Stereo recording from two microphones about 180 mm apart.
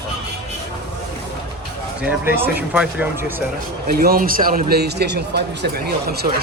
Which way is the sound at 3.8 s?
55° right (ahead or behind).